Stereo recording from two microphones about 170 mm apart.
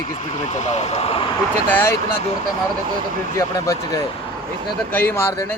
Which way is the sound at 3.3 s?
20° left (ahead or behind).